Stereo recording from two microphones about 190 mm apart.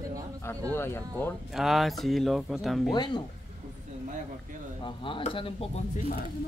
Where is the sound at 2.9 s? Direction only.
25° left (ahead or behind).